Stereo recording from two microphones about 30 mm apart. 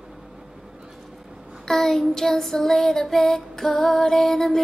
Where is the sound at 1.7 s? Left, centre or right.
Centre.